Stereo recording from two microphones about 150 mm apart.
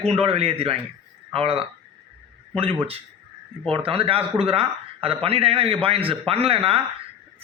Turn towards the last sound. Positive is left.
turn(degrees=-40)  # may be behind; listen again after turning